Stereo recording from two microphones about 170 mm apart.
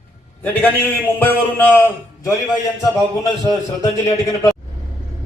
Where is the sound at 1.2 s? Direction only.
10° left (ahead or behind).